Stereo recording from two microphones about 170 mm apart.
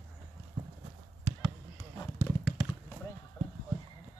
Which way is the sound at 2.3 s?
15° left (ahead or behind).